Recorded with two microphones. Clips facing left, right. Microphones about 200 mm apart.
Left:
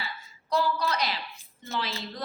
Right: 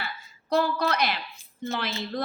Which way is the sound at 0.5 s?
55° right (ahead or behind).